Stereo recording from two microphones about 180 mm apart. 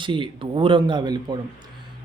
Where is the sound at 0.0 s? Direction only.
25° right (ahead or behind).